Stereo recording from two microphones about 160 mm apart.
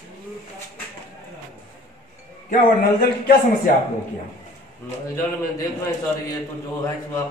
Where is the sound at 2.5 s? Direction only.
70° left (ahead or behind).